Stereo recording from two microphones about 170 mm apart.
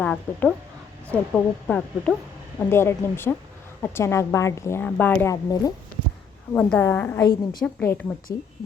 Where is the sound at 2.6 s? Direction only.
15° left (ahead or behind).